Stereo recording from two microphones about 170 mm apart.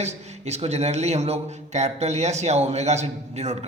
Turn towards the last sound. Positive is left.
turn(degrees=-40)  # may be behind; listen again after turning